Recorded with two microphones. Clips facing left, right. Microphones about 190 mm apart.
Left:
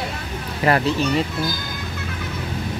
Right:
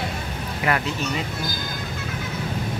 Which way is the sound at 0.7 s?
35° left (ahead or behind).